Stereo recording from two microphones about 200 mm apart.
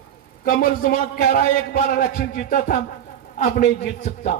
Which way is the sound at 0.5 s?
45° left (ahead or behind).